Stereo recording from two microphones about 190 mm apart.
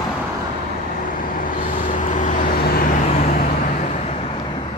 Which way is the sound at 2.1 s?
45° left (ahead or behind).